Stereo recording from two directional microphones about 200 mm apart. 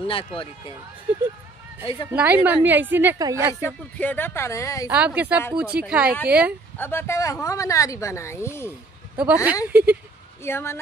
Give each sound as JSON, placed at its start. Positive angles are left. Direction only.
{"t": 0.0, "sound": "speech", "side_deg": 25}
{"t": 2.1, "sound": "a woman's voice", "side_deg": -5}
{"t": 4.0, "sound": "speech", "side_deg": 10}
{"t": 4.8, "sound": "a woman's voice", "side_deg": -5}
{"t": 6.8, "sound": "speech", "side_deg": 10}
{"t": 9.1, "sound": "a woman's voice", "side_deg": -5}
{"t": 10.4, "sound": "speech", "side_deg": 10}